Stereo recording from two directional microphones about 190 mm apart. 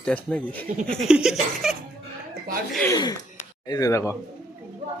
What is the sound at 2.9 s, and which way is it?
Speech, 20° left (ahead or behind).